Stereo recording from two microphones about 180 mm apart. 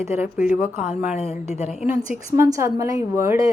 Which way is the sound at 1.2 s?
35° left (ahead or behind).